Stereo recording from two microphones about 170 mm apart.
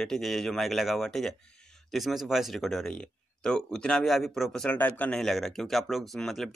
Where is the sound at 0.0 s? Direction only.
Centre (ahead or behind).